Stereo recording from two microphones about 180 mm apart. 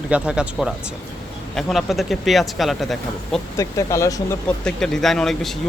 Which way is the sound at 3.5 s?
20° left (ahead or behind).